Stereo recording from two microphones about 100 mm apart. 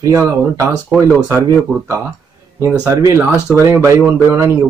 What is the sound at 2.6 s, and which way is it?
Speech, 30° right (ahead or behind).